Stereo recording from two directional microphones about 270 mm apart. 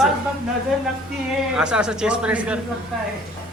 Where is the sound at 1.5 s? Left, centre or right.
Centre.